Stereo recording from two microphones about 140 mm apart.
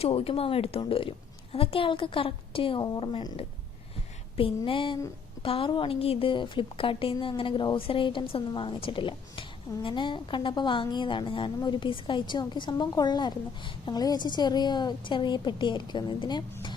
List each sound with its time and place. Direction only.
0.0 s a woman's voice: 45° left (ahead or behind)
2.8 s a woman's voice: 30° left (ahead or behind)